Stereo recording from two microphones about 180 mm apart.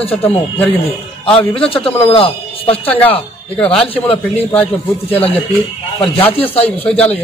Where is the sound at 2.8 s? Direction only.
10° left (ahead or behind).